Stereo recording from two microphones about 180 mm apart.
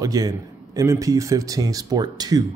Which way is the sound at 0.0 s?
20° right (ahead or behind).